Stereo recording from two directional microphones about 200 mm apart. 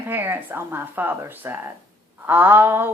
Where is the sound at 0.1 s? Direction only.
10° right (ahead or behind).